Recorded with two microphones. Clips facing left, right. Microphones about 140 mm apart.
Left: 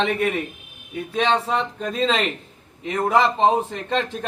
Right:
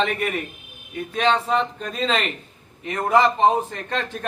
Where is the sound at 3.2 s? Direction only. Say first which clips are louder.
Right 1 dB; 20° left (ahead or behind).